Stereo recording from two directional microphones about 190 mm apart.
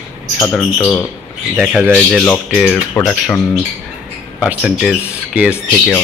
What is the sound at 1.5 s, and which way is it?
Speech, 5° right (ahead or behind).